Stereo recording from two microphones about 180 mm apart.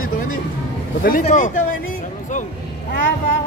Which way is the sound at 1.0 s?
50° left (ahead or behind).